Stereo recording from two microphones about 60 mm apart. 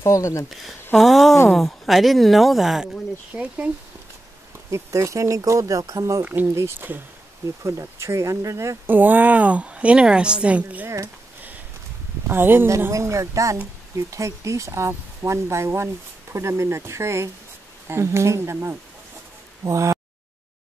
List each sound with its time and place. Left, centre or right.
0.0 s speech: left
0.5 s speech: centre
3.3 s a woman's voice: right
4.6 s speech: right
6.4 s speech: right
8.8 s a woman's voice: right
12.3 s speech: right
12.9 s speech: right
19.6 s speech: right